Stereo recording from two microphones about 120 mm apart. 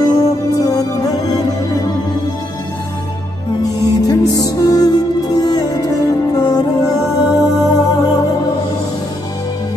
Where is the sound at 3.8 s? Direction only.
30° left (ahead or behind).